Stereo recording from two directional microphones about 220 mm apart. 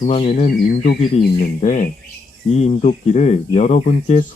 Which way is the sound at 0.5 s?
40° left (ahead or behind).